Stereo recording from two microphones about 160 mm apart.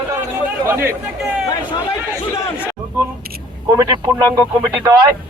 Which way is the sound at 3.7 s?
20° right (ahead or behind).